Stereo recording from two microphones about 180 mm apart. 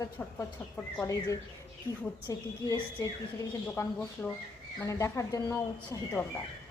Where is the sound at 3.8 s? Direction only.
10° left (ahead or behind).